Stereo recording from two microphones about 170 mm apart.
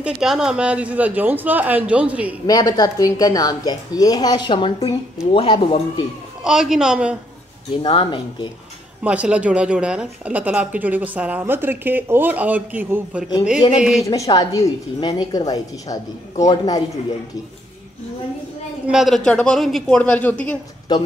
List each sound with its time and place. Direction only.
0.0 s a woman's voice: 5° right (ahead or behind)
2.4 s a woman's voice: 20° left (ahead or behind)
6.4 s speech: 5° right (ahead or behind)
7.8 s a woman's voice: 30° left (ahead or behind)
9.0 s a woman's voice: 5° right (ahead or behind)
14.0 s a woman's voice: 20° left (ahead or behind)
18.9 s speech: centre (ahead or behind)
20.9 s a woman's voice: 25° left (ahead or behind)